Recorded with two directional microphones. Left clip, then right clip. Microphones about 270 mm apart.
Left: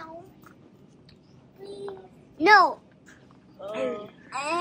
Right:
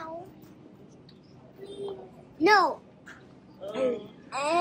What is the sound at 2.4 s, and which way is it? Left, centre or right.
Speech, centre.